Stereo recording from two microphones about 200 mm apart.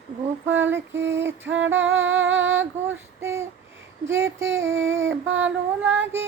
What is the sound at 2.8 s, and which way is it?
Child singing, 15° right (ahead or behind).